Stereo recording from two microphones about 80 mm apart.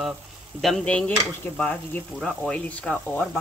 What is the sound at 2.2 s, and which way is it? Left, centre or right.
Speech, centre.